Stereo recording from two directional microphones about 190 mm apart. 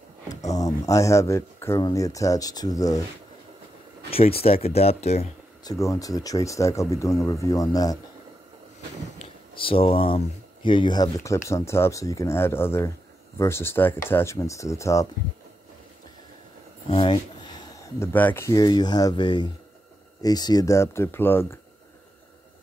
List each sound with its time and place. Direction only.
0.5 s speech: 15° left (ahead or behind)
4.1 s speech: 30° left (ahead or behind)
5.6 s speech: 20° left (ahead or behind)
9.2 s speech: 30° left (ahead or behind)
16.9 s speech: 30° left (ahead or behind); by 21.5 s 10° left (ahead or behind)